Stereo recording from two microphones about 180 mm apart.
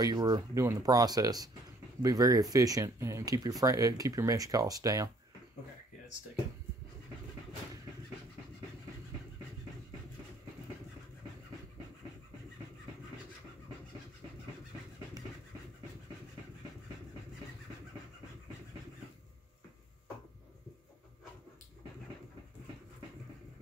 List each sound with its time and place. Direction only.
0.0 s speech: 20° right (ahead or behind)